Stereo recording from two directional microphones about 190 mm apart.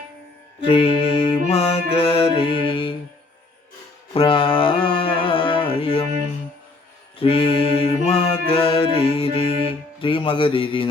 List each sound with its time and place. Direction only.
0.6 s mantra: 30° left (ahead or behind)
4.1 s mantra: 25° left (ahead or behind)
7.2 s mantra: 30° left (ahead or behind)